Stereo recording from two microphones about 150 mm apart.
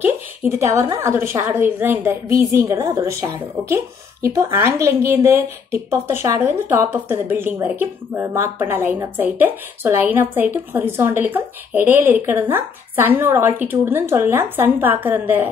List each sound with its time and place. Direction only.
0.4 s a woman's voice: 15° right (ahead or behind)